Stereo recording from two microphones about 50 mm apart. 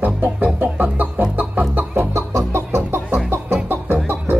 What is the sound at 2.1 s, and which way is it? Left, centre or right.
Music, right.